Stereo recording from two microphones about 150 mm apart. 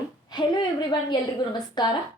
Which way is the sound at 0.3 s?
30° left (ahead or behind).